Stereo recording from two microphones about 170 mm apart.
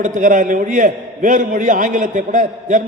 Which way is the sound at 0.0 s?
50° right (ahead or behind).